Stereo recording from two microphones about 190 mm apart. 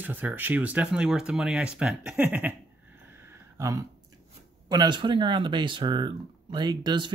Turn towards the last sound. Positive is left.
turn(degrees=-25)  # may be behind; listen again after turning